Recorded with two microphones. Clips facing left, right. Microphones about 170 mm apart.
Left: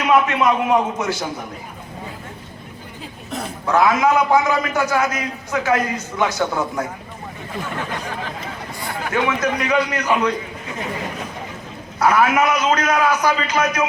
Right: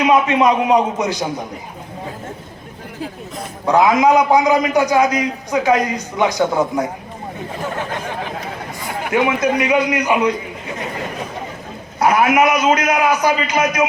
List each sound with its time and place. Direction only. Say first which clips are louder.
0.0 s a man's voice: right 3 dB; 20° right (ahead or behind)
3.7 s a man's voice: right 3 dB; 20° right (ahead or behind)
9.0 s a man's voice: right 4 dB; 15° right (ahead or behind)
11.9 s a man's voice: right 2 dB; 15° right (ahead or behind)